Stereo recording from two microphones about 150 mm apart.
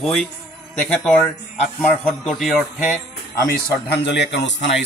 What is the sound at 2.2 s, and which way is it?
Speech, centre (ahead or behind).